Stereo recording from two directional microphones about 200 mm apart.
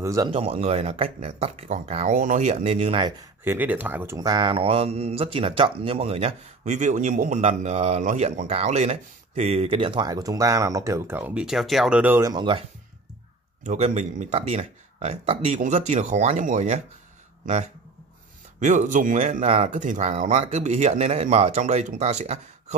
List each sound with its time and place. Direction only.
0.0 s speech: 15° right (ahead or behind)
0.3 s speech: 30° right (ahead or behind)
3.4 s speech: 10° right (ahead or behind)
13.7 s speech: 35° right (ahead or behind)
18.6 s speech: 40° right (ahead or behind)